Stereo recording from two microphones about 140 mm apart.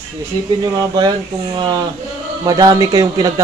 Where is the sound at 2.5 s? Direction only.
25° right (ahead or behind).